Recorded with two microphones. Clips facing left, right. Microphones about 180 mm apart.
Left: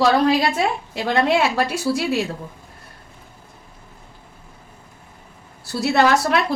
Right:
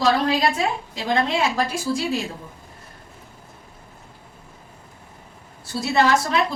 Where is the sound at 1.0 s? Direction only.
70° left (ahead or behind).